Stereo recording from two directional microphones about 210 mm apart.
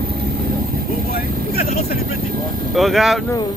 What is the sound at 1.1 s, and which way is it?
Vehicle, 45° left (ahead or behind).